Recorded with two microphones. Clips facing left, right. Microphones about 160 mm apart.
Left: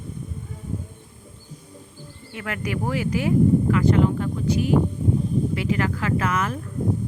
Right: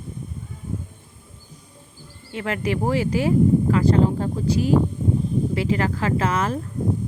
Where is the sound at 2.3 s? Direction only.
25° right (ahead or behind).